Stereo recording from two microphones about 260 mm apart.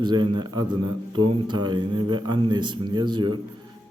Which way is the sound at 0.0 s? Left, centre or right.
Centre.